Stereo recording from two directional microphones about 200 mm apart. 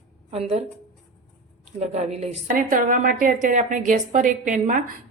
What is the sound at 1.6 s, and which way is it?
A woman's voice, 35° right (ahead or behind).